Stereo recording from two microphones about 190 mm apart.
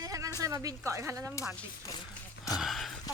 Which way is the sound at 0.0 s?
20° right (ahead or behind).